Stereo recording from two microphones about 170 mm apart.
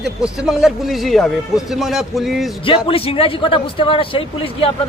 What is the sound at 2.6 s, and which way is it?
A man's voice, 30° left (ahead or behind).